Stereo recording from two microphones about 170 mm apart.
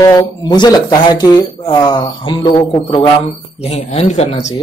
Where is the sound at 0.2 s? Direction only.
25° left (ahead or behind); by 4.6 s 40° left (ahead or behind).